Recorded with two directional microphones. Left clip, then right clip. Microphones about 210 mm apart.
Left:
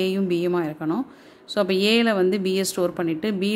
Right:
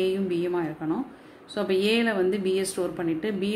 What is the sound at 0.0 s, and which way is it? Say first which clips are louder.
Speech: left 3 dB; 50° left (ahead or behind).